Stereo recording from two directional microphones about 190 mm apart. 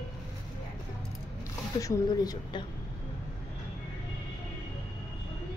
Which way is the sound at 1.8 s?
20° left (ahead or behind).